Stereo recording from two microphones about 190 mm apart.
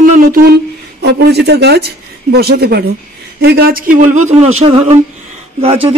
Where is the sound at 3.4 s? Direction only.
55° right (ahead or behind); by 5.9 s 30° right (ahead or behind).